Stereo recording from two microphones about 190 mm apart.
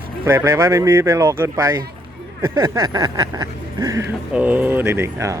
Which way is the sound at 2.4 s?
15° right (ahead or behind).